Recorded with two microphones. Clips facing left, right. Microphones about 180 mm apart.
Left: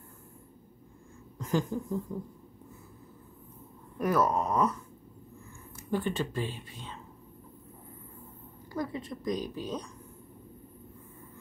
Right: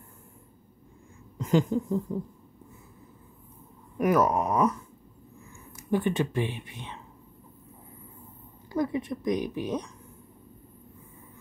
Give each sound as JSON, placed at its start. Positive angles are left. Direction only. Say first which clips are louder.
{"t": 1.4, "sound": "speech", "louder": "right 6 dB", "side_deg": -20}
{"t": 4.0, "sound": "a woman's voice", "louder": "right 4 dB", "side_deg": -15}
{"t": 5.9, "sound": "a woman's voice", "louder": "right 5 dB", "side_deg": -15}
{"t": 8.7, "sound": "a woman's voice", "louder": "right 7 dB", "side_deg": -15}